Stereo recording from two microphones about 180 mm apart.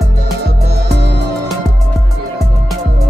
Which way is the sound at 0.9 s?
70° right (ahead or behind).